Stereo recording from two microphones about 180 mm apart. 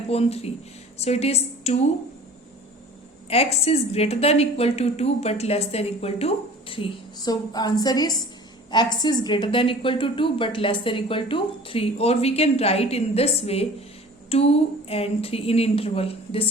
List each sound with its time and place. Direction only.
0.1 s a woman's voice: 35° left (ahead or behind)
3.2 s a woman's voice: 35° left (ahead or behind)